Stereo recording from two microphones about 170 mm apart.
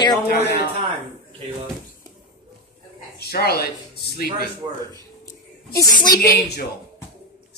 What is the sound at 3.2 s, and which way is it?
Speech, 70° left (ahead or behind).